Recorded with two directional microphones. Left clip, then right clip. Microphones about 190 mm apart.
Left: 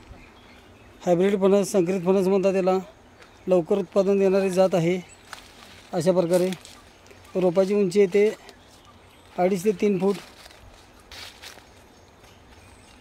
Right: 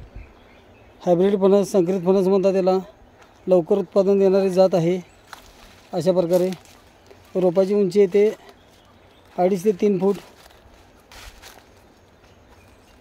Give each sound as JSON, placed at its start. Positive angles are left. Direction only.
{"t": 1.0, "sound": "a man's voice", "side_deg": -25}
{"t": 5.9, "sound": "speech", "side_deg": -10}
{"t": 7.3, "sound": "a man's voice", "side_deg": -20}
{"t": 9.4, "sound": "a man's voice", "side_deg": -20}
{"t": 11.1, "sound": "a sound", "side_deg": -5}